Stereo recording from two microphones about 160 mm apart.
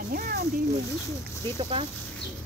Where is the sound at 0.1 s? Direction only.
70° right (ahead or behind).